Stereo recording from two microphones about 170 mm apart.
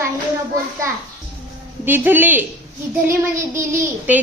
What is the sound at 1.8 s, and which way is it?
Speech, 10° right (ahead or behind).